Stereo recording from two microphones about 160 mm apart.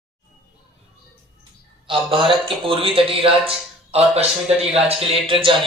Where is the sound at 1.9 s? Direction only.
30° right (ahead or behind).